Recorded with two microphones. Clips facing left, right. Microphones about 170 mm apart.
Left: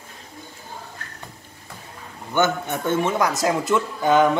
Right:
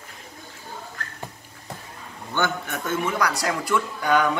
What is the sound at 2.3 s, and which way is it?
Speech, 20° left (ahead or behind).